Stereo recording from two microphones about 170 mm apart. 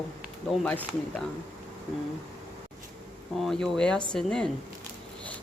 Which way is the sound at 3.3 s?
Centre (ahead or behind).